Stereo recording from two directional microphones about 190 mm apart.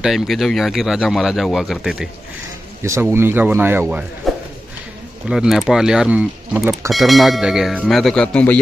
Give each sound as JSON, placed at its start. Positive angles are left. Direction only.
{"t": 0.0, "sound": "speech", "side_deg": 0}
{"t": 2.8, "sound": "speech", "side_deg": -15}
{"t": 4.2, "sound": "a sound", "side_deg": 0}
{"t": 5.3, "sound": "speech", "side_deg": 0}
{"t": 6.9, "sound": "speech", "side_deg": 0}